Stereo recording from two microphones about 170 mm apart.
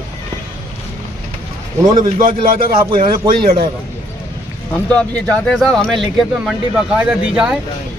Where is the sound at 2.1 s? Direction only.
60° right (ahead or behind).